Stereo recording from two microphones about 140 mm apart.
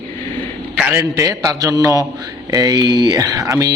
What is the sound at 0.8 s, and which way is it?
A man's voice, 20° right (ahead or behind).